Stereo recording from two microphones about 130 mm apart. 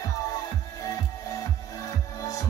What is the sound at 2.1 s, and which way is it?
Music, 25° left (ahead or behind).